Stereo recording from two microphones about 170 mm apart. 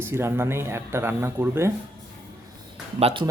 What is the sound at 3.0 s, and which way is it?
Speech, 35° right (ahead or behind).